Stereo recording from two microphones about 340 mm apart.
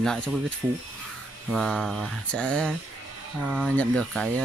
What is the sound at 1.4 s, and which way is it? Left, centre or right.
Speech, centre.